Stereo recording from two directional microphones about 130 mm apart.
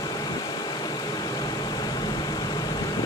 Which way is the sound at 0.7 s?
30° left (ahead or behind).